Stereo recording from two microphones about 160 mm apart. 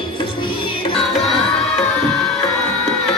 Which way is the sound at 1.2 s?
Centre (ahead or behind).